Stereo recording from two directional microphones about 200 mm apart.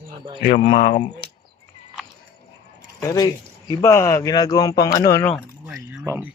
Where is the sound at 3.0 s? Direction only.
15° left (ahead or behind).